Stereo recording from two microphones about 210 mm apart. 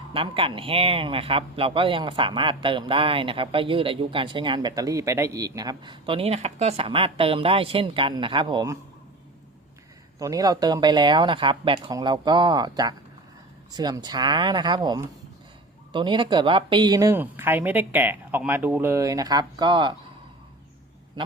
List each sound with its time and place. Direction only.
0.1 s speech: 25° right (ahead or behind)
10.2 s speech: 15° right (ahead or behind)